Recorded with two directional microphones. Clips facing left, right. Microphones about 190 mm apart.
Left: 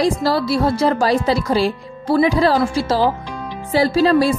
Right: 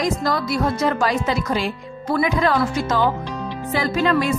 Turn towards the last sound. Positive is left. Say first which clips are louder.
# left 5 dB
turn(degrees=35)  # may be behind; listen again after turning